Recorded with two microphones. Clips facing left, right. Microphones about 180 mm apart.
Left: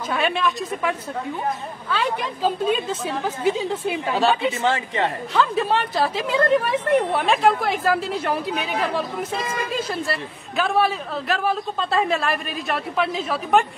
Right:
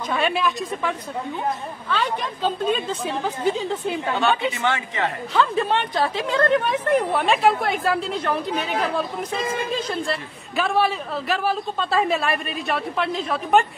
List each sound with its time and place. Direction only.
0.1 s a man's voice: centre (ahead or behind)
4.6 s speech: 30° left (ahead or behind)
5.3 s a man's voice: centre (ahead or behind)